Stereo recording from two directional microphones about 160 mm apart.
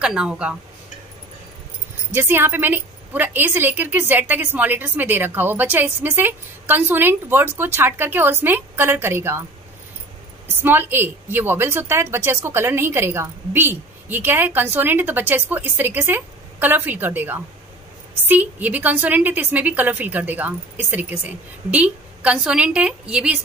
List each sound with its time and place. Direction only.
0.0 s a woman's voice: 5° right (ahead or behind)
2.0 s a woman's voice: 15° right (ahead or behind)
10.6 s a woman's voice: 15° right (ahead or behind)